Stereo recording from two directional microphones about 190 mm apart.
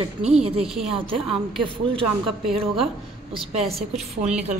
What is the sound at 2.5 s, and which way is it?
Speech, 30° right (ahead or behind).